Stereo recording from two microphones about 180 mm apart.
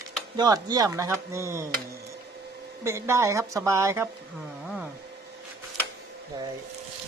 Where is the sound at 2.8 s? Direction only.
15° right (ahead or behind).